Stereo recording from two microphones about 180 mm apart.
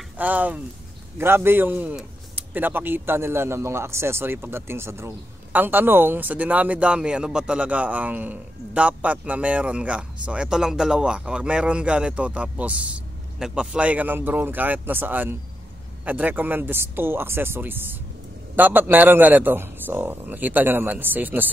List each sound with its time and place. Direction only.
0.2 s speech: 10° right (ahead or behind)